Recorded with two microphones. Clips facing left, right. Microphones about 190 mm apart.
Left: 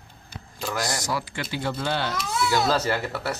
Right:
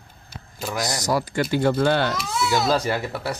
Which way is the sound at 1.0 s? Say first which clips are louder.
Right 7 dB; 40° right (ahead or behind).